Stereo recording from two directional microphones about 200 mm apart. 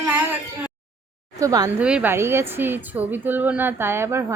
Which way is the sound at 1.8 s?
5° right (ahead or behind).